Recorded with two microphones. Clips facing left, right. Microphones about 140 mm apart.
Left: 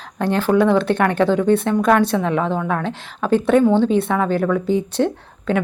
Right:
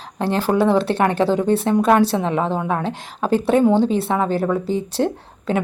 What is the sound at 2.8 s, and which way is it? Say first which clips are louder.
Speech: left 1 dB; 35° right (ahead or behind).